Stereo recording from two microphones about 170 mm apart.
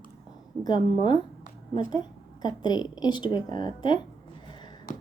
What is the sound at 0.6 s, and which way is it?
A woman's voice, 25° left (ahead or behind).